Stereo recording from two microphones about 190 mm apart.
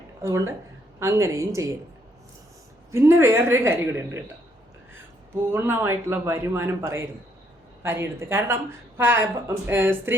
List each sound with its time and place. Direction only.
0.2 s a man's voice: 15° right (ahead or behind)
2.9 s a man's voice: 15° right (ahead or behind)
5.3 s a man's voice: 10° right (ahead or behind)